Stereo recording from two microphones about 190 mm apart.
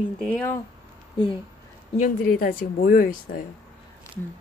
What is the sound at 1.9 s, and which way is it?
Speech, 45° left (ahead or behind).